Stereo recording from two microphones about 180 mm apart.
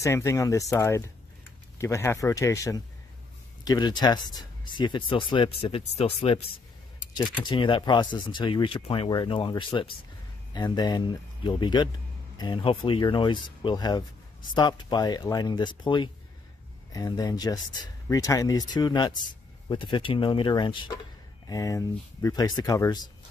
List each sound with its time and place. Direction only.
0.0 s speech: 15° left (ahead or behind)